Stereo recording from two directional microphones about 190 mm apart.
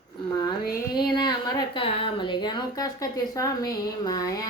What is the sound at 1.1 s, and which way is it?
A woman's voice, 20° left (ahead or behind).